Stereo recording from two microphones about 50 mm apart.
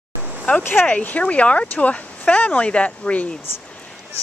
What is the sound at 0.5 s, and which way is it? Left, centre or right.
Speech, left.